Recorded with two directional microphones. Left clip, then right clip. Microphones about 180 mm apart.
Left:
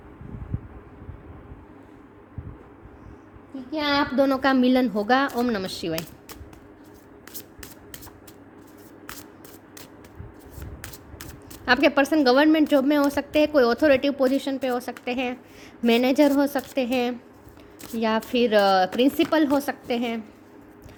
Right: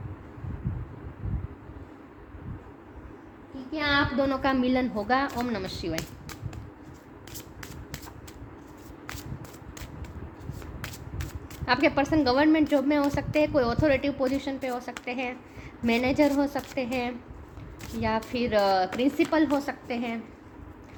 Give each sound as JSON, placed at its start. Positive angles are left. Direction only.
{"t": 3.8, "sound": "a woman's voice", "side_deg": 70}
{"t": 11.6, "sound": "a woman's voice", "side_deg": 55}